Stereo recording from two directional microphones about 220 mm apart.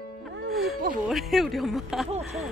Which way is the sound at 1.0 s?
Centre (ahead or behind).